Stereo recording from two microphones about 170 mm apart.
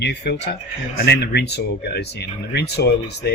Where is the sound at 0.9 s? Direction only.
75° left (ahead or behind).